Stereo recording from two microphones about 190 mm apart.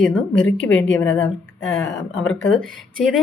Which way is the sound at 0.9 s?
10° left (ahead or behind).